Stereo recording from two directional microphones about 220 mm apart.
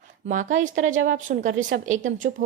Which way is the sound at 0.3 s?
35° right (ahead or behind).